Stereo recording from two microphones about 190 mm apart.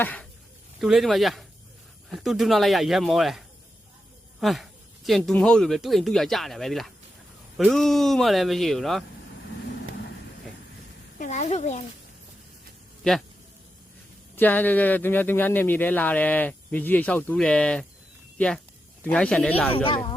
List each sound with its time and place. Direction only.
0.0 s speech: 10° left (ahead or behind)
11.2 s speech: 40° left (ahead or behind)
14.3 s speech: 10° left (ahead or behind)
19.7 s speech: 25° left (ahead or behind)